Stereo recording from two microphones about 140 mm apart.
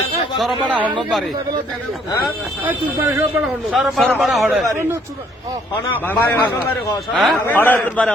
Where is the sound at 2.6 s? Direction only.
15° right (ahead or behind).